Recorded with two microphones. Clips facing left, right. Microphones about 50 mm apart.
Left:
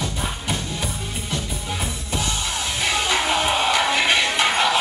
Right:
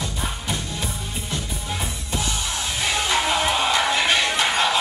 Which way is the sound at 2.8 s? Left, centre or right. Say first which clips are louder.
Even; left.